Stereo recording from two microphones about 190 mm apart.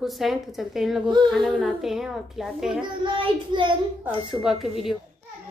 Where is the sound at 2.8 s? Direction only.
25° right (ahead or behind).